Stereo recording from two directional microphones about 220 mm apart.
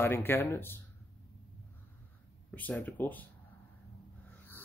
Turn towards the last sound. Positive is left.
turn(degrees=10)  # may be behind; listen again after turning